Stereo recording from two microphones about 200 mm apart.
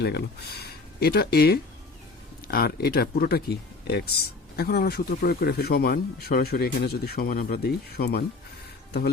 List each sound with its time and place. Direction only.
0.6 s speech: 50° left (ahead or behind)